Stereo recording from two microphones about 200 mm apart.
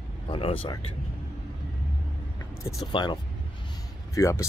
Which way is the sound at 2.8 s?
20° left (ahead or behind).